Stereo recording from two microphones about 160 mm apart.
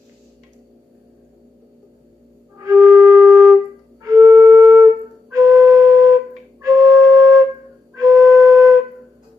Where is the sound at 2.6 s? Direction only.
20° right (ahead or behind).